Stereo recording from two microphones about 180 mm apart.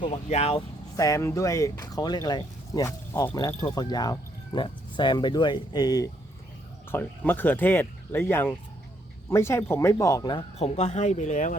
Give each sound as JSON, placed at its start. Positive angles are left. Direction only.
{"t": 0.0, "sound": "speech", "side_deg": 35}
{"t": 0.9, "sound": "speech", "side_deg": 20}
{"t": 6.9, "sound": "speech", "side_deg": 10}
{"t": 10.6, "sound": "speech", "side_deg": 40}